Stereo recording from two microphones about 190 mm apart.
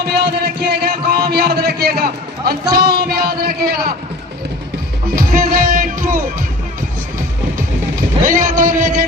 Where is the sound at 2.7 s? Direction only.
55° right (ahead or behind).